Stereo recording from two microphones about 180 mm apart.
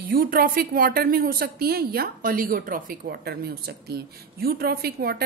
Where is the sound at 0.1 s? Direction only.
50° right (ahead or behind).